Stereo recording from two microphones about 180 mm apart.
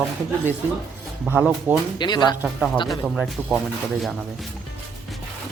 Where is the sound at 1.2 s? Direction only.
10° right (ahead or behind).